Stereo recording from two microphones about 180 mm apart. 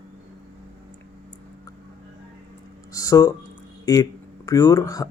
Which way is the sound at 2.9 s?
20° left (ahead or behind).